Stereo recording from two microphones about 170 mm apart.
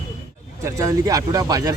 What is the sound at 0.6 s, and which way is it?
Speech, 20° right (ahead or behind).